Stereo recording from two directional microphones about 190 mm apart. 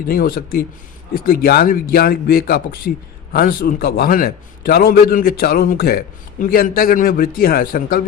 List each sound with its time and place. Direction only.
0.1 s a man's voice: 50° left (ahead or behind)